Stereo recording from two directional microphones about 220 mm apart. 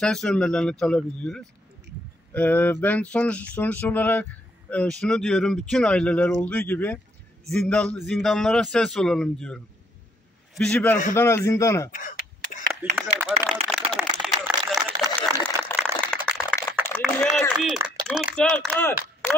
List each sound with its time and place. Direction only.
0.0 s speech: 5° left (ahead or behind)
11.9 s speech: 40° left (ahead or behind)
12.8 s speech: 5° right (ahead or behind)
13.5 s a sound: centre (ahead or behind)
18.0 s speech: centre (ahead or behind)